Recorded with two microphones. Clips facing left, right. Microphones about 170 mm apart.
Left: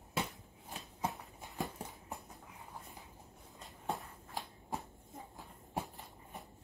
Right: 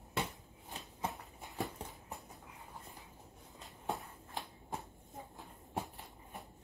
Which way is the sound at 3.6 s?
Centre (ahead or behind).